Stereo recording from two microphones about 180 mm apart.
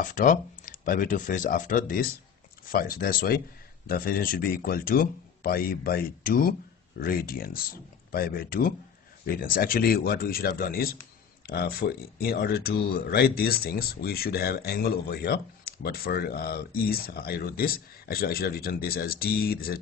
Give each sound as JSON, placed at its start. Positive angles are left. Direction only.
{"t": 0.0, "sound": "speech", "side_deg": 45}